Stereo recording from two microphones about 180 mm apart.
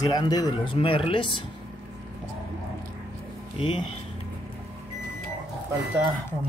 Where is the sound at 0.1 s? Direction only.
20° left (ahead or behind).